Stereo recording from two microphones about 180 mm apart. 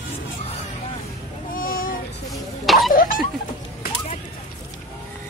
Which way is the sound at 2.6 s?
Centre (ahead or behind).